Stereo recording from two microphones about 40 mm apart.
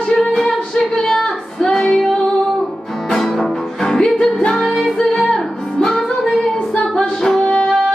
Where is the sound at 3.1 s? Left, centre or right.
Centre.